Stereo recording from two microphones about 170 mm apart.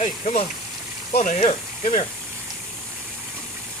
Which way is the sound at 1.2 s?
40° left (ahead or behind).